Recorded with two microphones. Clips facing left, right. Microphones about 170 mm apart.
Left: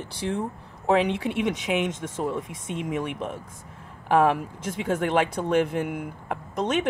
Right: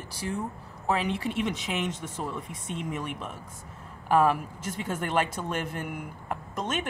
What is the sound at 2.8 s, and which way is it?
Speech, 55° left (ahead or behind).